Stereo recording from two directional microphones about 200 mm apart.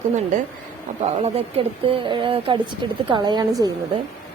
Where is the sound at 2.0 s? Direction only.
25° right (ahead or behind).